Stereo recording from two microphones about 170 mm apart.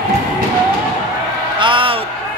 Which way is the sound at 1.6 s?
30° right (ahead or behind).